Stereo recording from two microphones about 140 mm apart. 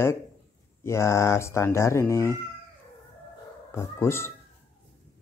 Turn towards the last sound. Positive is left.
turn(degrees=20)  # may be behind; listen again after turning